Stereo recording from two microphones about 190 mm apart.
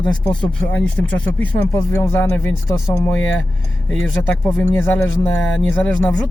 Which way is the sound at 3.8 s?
10° left (ahead or behind).